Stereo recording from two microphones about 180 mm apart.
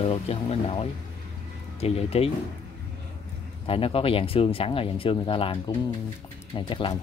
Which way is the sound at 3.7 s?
30° left (ahead or behind).